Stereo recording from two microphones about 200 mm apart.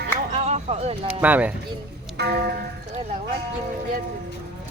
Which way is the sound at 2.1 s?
55° right (ahead or behind).